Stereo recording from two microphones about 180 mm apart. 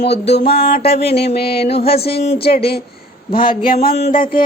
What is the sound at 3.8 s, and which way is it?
Mantra, 65° left (ahead or behind).